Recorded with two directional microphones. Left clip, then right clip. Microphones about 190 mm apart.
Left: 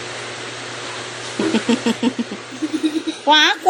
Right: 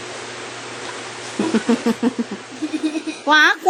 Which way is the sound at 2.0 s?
20° right (ahead or behind).